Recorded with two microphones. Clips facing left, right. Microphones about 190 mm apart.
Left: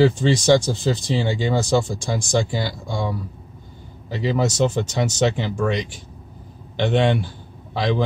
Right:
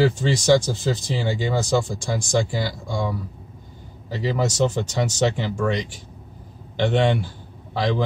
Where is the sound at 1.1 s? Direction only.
25° left (ahead or behind).